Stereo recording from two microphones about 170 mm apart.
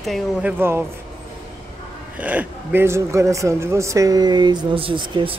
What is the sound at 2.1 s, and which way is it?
Speech, 10° right (ahead or behind).